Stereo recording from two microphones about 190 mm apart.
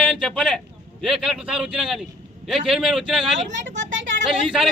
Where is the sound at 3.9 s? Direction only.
75° right (ahead or behind).